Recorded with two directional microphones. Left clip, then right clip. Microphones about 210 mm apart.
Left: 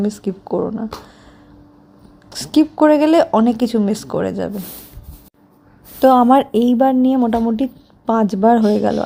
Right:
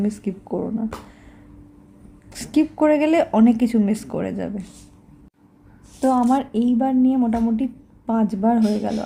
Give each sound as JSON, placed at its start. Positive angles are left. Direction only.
{"t": 0.0, "sound": "speech", "side_deg": 10}
{"t": 2.3, "sound": "speech", "side_deg": 10}
{"t": 6.0, "sound": "a woman's voice", "side_deg": 30}